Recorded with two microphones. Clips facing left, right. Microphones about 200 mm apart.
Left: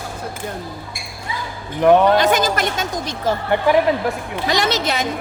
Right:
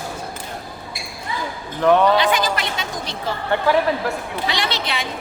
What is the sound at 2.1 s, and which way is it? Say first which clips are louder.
A woman's voice: left 3 dB; 45° left (ahead or behind).